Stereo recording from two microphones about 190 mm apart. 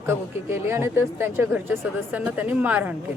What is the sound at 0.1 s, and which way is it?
Speech, 15° right (ahead or behind).